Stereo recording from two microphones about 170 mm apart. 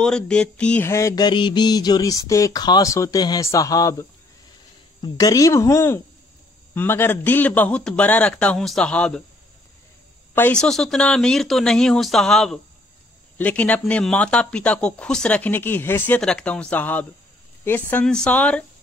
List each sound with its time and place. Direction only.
0.0 s mantra: 5° left (ahead or behind)
6.7 s speech: 10° left (ahead or behind)
10.3 s speech: 10° left (ahead or behind)